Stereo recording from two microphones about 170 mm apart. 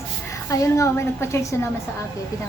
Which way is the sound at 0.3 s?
20° left (ahead or behind).